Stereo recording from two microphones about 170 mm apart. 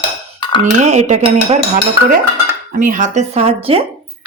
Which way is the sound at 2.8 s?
50° right (ahead or behind).